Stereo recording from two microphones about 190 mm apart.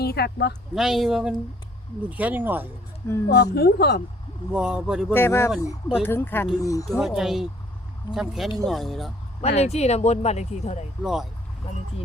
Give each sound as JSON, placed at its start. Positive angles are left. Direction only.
{"t": 0.0, "sound": "speech", "side_deg": 55}
{"t": 0.8, "sound": "speech", "side_deg": 0}
{"t": 3.2, "sound": "speech", "side_deg": 60}
{"t": 4.5, "sound": "speech", "side_deg": -5}
{"t": 5.1, "sound": "speech", "side_deg": 10}
{"t": 6.9, "sound": "speech", "side_deg": 0}
{"t": 9.6, "sound": "speech", "side_deg": 35}
{"t": 11.0, "sound": "speech", "side_deg": 0}